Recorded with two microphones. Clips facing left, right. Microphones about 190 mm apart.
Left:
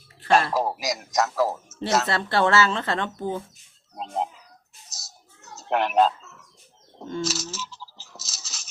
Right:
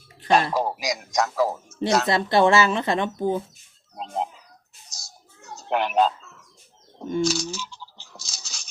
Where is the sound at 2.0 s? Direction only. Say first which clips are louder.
Right 4 dB; 15° right (ahead or behind).